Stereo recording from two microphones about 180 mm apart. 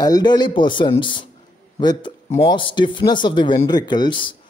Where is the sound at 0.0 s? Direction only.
20° left (ahead or behind).